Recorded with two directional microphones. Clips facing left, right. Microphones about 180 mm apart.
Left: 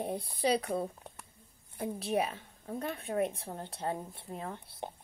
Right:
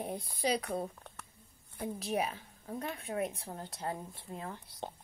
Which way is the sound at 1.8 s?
30° left (ahead or behind).